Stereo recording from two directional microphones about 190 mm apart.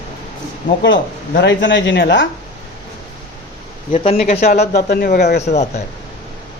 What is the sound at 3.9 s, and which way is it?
Speech, 35° left (ahead or behind).